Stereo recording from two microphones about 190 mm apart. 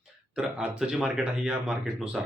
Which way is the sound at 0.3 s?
5° right (ahead or behind).